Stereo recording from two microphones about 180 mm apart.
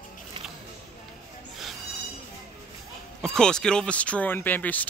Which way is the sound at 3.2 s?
5° left (ahead or behind).